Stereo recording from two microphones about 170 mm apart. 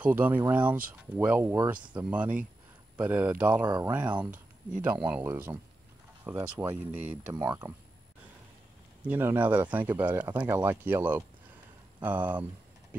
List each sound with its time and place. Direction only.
0.0 s speech: 10° right (ahead or behind)
3.6 s speech: 20° right (ahead or behind)
3.9 s speech: 10° right (ahead or behind)
9.0 s speech: 10° right (ahead or behind)